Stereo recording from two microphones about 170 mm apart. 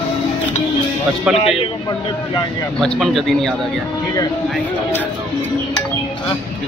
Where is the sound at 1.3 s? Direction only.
35° left (ahead or behind).